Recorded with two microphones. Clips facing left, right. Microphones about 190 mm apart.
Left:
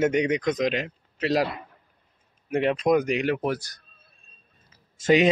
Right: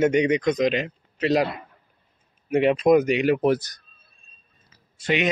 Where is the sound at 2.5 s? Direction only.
5° right (ahead or behind).